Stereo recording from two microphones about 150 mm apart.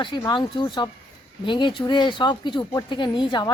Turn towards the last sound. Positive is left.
turn(degrees=30)  # may be behind; listen again after turning